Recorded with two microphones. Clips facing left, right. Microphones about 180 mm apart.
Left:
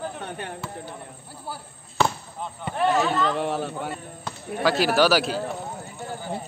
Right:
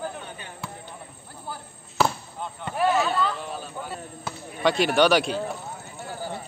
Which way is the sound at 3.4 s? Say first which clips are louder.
Left 8 dB; 75° left (ahead or behind).